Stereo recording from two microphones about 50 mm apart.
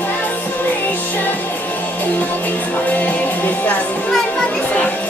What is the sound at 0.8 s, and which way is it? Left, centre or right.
Music, left.